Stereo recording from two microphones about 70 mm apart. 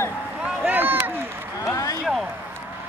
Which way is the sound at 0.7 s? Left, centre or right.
Right.